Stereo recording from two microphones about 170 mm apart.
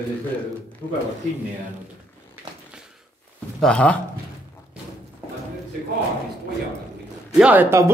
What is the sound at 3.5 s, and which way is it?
Speech, 5° left (ahead or behind).